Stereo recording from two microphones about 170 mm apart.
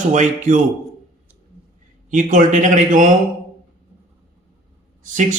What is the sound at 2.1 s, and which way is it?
A man's voice, 50° right (ahead or behind).